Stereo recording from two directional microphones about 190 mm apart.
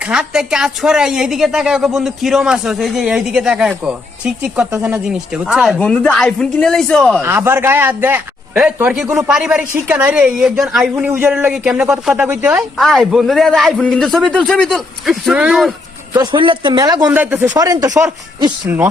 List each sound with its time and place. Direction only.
0.0 s a man's voice: 5° right (ahead or behind)
7.2 s a man's voice: 15° right (ahead or behind)
16.1 s speech: 25° right (ahead or behind)
17.1 s speech: 10° right (ahead or behind)